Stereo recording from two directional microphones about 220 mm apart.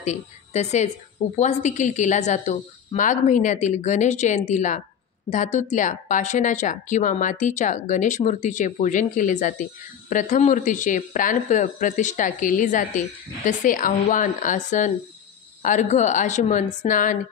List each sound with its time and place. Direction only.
0.0 s a woman's voice: 30° left (ahead or behind)